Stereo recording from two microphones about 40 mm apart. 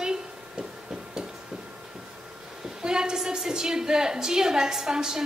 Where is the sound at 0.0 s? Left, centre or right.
Centre.